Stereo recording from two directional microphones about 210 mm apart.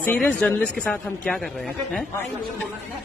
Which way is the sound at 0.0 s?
10° left (ahead or behind).